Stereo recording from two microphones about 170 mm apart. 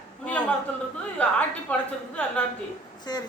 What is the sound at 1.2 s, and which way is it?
Speech, 5° left (ahead or behind).